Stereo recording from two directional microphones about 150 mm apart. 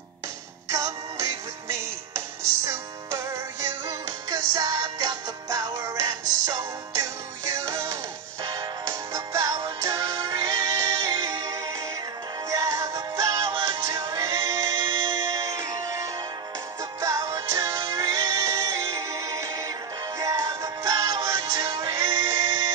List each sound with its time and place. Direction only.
0.7 s music: 20° right (ahead or behind)
2.6 s music: 20° right (ahead or behind)
12.4 s synthetic singing: 20° right (ahead or behind)
17.0 s music: 20° right (ahead or behind)